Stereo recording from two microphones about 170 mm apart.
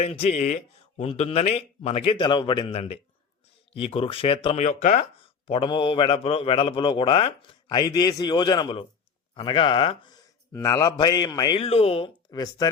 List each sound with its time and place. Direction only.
0.0 s speech: 40° left (ahead or behind)
5.2 s a man's voice: 30° left (ahead or behind)
11.6 s speech: 35° left (ahead or behind)